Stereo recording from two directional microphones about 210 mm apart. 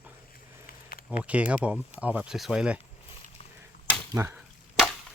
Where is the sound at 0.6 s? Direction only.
45° left (ahead or behind).